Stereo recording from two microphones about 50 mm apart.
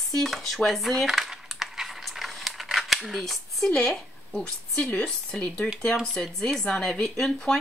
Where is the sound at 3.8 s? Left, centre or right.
Centre.